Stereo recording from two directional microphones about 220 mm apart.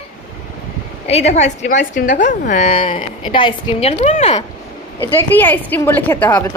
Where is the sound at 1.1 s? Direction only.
30° left (ahead or behind).